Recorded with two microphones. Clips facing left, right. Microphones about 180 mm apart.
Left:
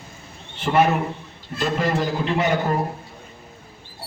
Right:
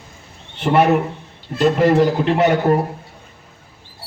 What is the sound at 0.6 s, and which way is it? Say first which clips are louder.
A man's voice: right 4 dB; 65° right (ahead or behind).